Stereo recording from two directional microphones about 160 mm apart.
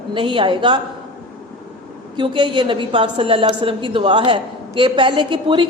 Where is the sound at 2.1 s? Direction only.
30° right (ahead or behind).